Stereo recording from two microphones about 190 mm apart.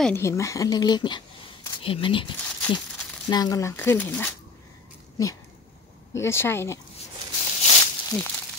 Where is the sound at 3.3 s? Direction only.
20° left (ahead or behind).